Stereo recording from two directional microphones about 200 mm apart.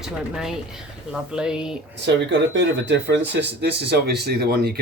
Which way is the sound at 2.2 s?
65° right (ahead or behind).